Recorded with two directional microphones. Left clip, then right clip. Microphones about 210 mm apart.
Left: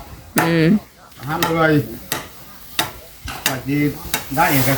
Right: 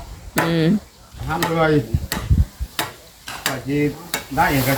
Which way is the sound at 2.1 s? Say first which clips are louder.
Left 2 dB; 5° left (ahead or behind).